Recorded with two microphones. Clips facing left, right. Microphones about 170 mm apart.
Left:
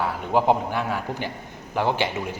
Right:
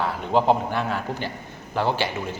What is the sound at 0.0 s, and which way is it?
A man's voice, 10° left (ahead or behind).